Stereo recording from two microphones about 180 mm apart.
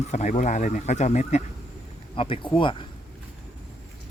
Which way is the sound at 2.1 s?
30° left (ahead or behind).